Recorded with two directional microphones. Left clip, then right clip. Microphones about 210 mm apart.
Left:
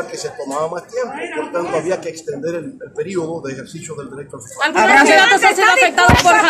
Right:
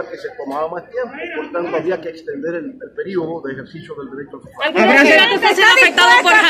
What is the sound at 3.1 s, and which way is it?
Speech, 25° left (ahead or behind).